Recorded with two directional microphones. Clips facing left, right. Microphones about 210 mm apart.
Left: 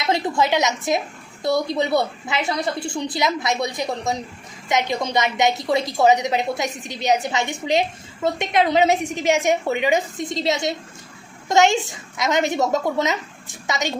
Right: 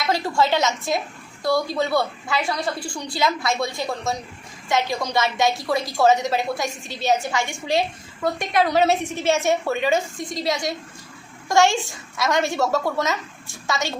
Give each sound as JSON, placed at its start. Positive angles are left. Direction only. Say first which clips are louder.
{"t": 0.0, "sound": "a woman's voice", "louder": "left 1 dB", "side_deg": 20}